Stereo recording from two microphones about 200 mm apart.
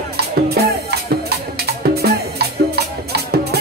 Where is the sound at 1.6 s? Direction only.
50° right (ahead or behind).